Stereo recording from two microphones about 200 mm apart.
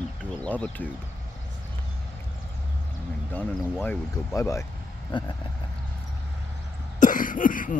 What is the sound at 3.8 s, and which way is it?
Speech, 5° left (ahead or behind).